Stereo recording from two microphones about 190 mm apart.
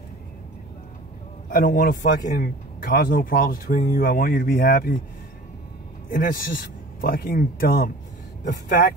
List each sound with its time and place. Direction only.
1.5 s a man's voice: 50° left (ahead or behind)
6.1 s a man's voice: 45° left (ahead or behind)